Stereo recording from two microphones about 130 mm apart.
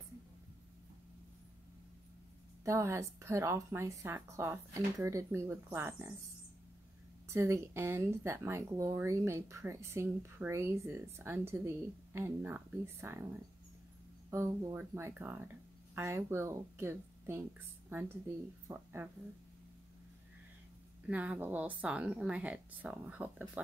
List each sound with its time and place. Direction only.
2.6 s speech: 20° right (ahead or behind)
7.2 s speech: 20° right (ahead or behind)
14.3 s speech: 20° right (ahead or behind)
21.1 s speech: 10° right (ahead or behind)